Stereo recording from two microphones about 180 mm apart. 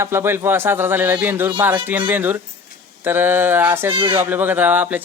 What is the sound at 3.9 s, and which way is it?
Speech, 30° right (ahead or behind).